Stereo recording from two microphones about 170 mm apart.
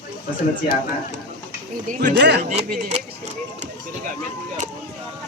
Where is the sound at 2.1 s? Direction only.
90° right.